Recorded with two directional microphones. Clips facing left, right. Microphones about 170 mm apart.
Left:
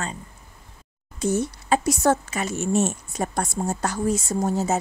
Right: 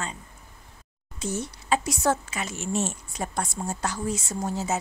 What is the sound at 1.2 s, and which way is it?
Speech, 50° left (ahead or behind).